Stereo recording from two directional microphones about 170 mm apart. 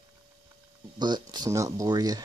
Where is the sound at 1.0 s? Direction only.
25° right (ahead or behind).